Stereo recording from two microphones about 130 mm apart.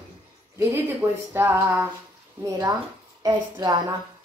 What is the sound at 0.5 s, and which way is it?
Speech, 20° right (ahead or behind).